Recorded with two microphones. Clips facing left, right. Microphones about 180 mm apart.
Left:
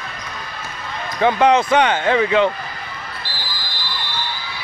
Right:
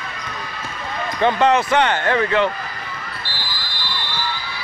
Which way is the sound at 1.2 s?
15° left (ahead or behind).